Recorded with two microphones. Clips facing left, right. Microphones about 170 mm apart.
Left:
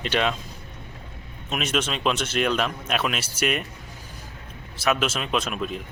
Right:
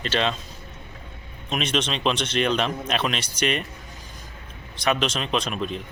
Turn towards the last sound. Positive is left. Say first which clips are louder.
# even
turn(degrees=5)  # may be behind; listen again after turning